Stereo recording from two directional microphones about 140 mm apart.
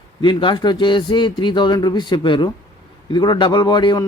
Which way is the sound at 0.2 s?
35° left (ahead or behind).